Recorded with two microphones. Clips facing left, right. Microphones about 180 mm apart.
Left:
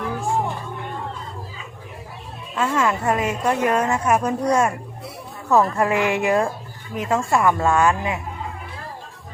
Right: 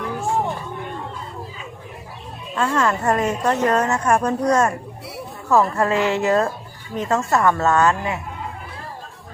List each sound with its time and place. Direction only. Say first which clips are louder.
2.6 s a woman's voice: right 1 dB; 10° left (ahead or behind)